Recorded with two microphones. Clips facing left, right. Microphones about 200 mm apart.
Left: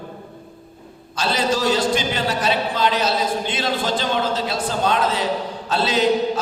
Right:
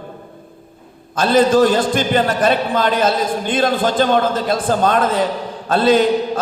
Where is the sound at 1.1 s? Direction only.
50° right (ahead or behind).